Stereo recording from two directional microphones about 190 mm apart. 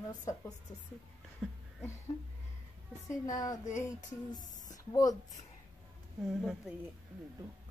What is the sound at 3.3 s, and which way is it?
Music, 20° left (ahead or behind).